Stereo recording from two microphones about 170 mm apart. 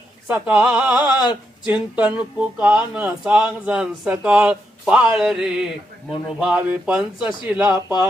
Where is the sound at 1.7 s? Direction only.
10° right (ahead or behind).